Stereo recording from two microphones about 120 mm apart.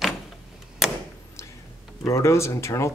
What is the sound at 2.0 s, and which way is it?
Speech, 25° left (ahead or behind).